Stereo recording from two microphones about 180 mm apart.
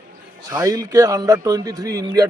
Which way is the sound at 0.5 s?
20° right (ahead or behind).